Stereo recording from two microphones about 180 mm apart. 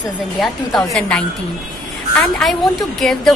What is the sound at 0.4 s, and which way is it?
A woman's voice, 5° left (ahead or behind).